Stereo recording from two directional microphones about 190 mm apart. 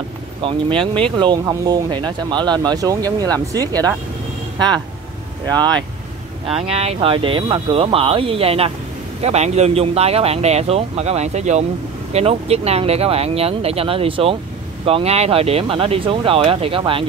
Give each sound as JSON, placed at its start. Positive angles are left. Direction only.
{"t": 0.4, "sound": "speech", "side_deg": -25}
{"t": 5.5, "sound": "speech", "side_deg": -20}
{"t": 6.7, "sound": "speech", "side_deg": -30}